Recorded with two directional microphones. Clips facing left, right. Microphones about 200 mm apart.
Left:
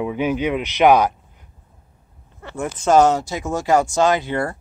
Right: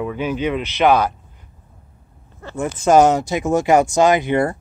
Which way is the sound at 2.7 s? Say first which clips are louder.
Right 2 dB; 15° right (ahead or behind).